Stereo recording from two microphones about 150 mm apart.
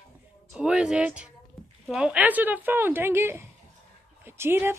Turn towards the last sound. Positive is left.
turn(degrees=-15)  # may be behind; listen again after turning